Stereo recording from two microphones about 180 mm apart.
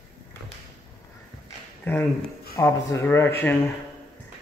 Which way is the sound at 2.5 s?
15° left (ahead or behind).